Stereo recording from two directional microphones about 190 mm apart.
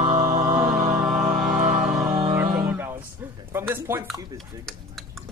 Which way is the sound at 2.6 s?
10° right (ahead or behind).